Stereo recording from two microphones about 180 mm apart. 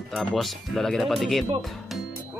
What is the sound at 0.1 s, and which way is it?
Speech, 5° left (ahead or behind).